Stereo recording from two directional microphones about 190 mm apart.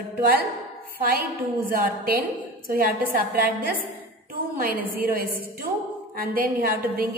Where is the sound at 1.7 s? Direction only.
50° right (ahead or behind).